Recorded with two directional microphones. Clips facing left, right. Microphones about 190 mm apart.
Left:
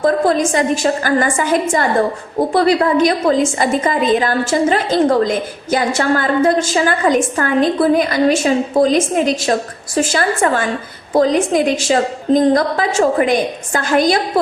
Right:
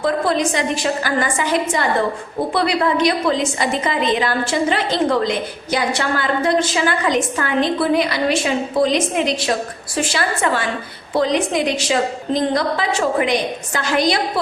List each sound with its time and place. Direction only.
0.0 s a woman's voice: 45° left (ahead or behind)